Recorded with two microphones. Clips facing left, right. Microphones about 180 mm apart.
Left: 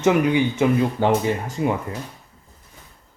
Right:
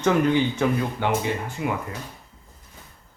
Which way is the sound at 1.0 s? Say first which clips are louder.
Left 5 dB; 40° left (ahead or behind).